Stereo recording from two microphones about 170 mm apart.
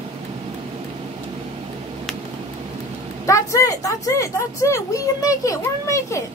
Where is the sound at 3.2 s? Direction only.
20° left (ahead or behind).